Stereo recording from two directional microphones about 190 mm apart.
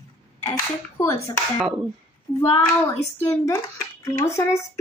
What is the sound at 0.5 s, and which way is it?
Speech, 15° left (ahead or behind).